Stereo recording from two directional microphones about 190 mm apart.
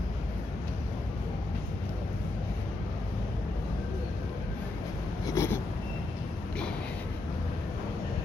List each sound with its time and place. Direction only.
5.2 s writing: 15° left (ahead or behind)